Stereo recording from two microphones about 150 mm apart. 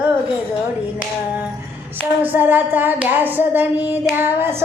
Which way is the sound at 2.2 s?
10° right (ahead or behind).